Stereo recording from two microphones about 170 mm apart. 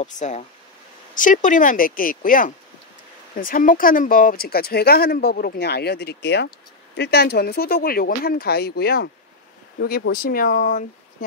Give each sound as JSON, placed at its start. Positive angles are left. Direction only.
{"t": 0.0, "sound": "a woman's voice", "side_deg": 45}
{"t": 7.0, "sound": "speech", "side_deg": 70}